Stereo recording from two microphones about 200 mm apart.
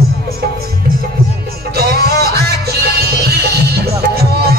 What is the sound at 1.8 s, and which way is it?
Music, 50° right (ahead or behind).